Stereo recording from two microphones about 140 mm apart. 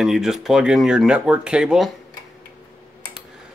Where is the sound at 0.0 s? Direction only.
Centre (ahead or behind).